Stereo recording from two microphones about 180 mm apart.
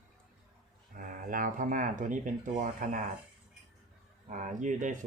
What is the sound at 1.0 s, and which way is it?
Speech, 50° right (ahead or behind).